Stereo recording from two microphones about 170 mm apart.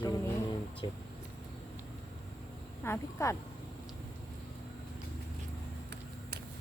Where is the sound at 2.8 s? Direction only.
15° left (ahead or behind).